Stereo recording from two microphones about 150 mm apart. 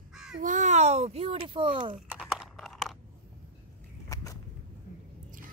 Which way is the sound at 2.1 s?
5° right (ahead or behind).